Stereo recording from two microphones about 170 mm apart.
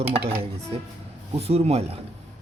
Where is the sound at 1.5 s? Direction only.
35° right (ahead or behind).